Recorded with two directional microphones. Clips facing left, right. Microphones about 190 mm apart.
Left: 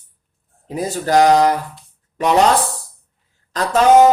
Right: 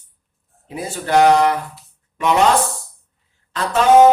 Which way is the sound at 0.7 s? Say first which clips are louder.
Left 2 dB; 40° left (ahead or behind).